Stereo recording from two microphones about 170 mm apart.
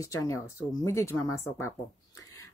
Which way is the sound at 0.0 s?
20° left (ahead or behind).